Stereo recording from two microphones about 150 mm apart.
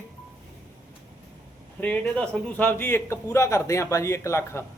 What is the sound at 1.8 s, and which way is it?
Speech, 10° left (ahead or behind).